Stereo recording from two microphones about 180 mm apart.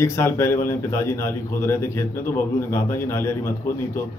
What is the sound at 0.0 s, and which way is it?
A man's voice, 15° left (ahead or behind).